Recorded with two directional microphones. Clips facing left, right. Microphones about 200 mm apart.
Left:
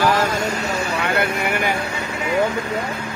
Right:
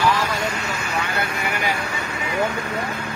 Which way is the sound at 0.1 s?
45° left (ahead or behind).